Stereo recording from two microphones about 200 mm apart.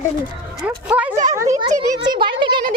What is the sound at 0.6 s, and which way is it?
A child's voice, 5° right (ahead or behind).